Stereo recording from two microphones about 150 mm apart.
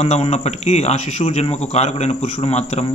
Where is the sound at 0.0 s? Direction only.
45° left (ahead or behind).